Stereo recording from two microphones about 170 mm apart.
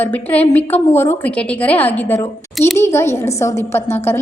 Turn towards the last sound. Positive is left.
turn(degrees=15)  # may be behind; listen again after turning